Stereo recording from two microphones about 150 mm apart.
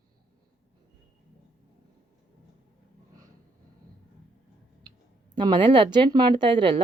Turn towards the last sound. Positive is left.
turn(degrees=-35)  # may be behind; listen again after turning